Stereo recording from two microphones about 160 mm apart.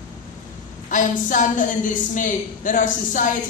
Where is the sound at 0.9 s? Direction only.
55° left (ahead or behind).